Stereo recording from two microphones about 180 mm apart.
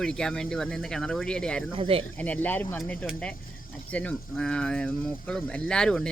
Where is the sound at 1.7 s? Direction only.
30° right (ahead or behind).